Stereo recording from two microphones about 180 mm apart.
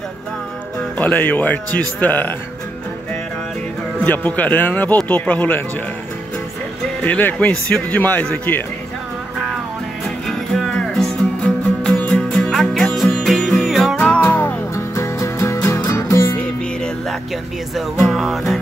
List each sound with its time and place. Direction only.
0.7 s speech: 10° left (ahead or behind)
4.0 s speech: 10° left (ahead or behind)
7.0 s speech: 10° left (ahead or behind)
10.2 s music: centre (ahead or behind)
16.4 s music: 5° left (ahead or behind)